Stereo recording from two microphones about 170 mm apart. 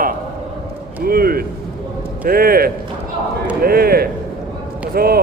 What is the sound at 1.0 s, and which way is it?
Speech, 60° right (ahead or behind).